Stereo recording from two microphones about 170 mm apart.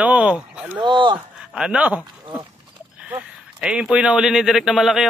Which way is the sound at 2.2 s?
30° right (ahead or behind).